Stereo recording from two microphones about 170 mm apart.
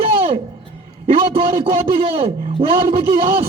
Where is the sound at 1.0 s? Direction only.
30° right (ahead or behind).